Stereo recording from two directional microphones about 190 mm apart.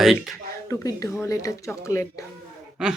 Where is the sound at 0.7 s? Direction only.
15° left (ahead or behind).